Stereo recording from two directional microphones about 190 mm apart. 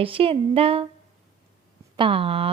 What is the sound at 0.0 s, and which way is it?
Speech, 30° right (ahead or behind).